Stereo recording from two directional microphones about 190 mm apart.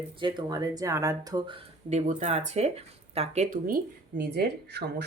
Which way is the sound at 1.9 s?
40° right (ahead or behind).